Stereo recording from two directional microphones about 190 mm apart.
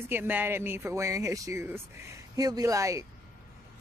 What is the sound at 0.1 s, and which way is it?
Speech, 10° right (ahead or behind).